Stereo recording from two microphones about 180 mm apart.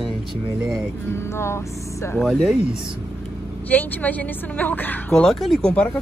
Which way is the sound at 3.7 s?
10° left (ahead or behind).